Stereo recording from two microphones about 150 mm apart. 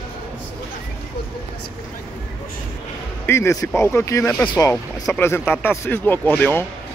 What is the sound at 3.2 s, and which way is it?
Speech, 15° left (ahead or behind).